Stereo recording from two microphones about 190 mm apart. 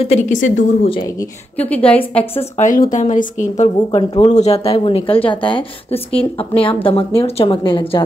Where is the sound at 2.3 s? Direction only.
40° left (ahead or behind).